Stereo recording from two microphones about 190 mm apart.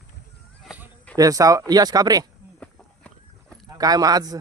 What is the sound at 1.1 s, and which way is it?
Speech, 20° right (ahead or behind).